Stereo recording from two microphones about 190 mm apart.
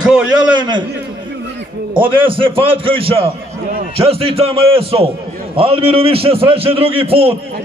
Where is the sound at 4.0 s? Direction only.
30° right (ahead or behind).